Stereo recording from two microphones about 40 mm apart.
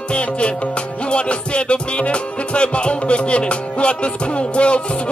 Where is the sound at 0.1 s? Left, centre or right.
Left.